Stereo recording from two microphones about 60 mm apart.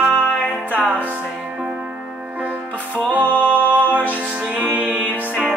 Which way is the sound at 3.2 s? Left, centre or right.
Left.